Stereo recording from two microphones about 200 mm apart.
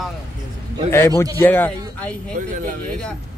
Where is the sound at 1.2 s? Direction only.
10° left (ahead or behind).